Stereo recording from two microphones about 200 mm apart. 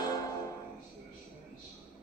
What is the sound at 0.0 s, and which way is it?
Music, 20° left (ahead or behind).